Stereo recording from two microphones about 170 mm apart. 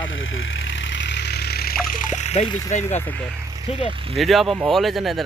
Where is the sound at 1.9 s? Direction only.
50° left (ahead or behind).